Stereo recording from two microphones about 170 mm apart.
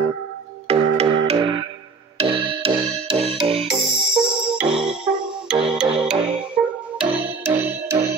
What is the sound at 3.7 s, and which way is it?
Music, centre (ahead or behind).